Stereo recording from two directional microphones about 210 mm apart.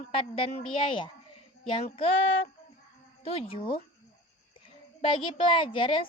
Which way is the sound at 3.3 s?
25° left (ahead or behind).